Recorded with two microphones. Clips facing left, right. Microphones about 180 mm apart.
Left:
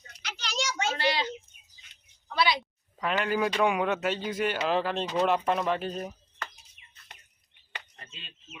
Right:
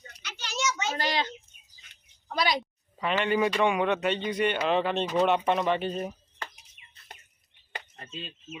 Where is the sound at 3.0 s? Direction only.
Centre (ahead or behind).